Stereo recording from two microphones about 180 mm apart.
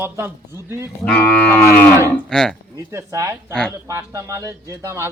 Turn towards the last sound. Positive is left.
turn(degrees=-15)  # may be behind; listen again after turning